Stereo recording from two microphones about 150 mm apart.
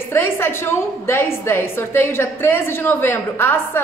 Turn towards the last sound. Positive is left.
turn(degrees=15)  # may be behind; listen again after turning